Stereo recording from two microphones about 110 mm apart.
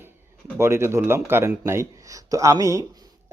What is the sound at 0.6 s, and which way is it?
A man's voice, 25° right (ahead or behind).